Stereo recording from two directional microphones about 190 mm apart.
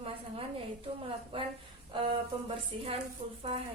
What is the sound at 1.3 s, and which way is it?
Music, 25° right (ahead or behind).